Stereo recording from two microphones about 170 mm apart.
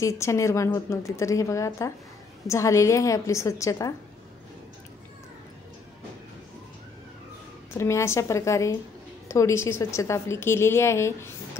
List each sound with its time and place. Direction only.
0.0 s a woman's voice: 15° left (ahead or behind)
7.7 s a woman's voice: 15° left (ahead or behind)